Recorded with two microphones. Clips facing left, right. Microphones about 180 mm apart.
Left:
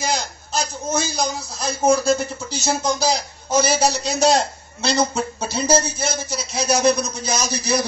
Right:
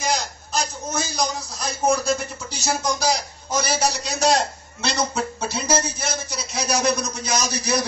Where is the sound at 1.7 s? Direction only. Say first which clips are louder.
Left 4 dB; 25° left (ahead or behind).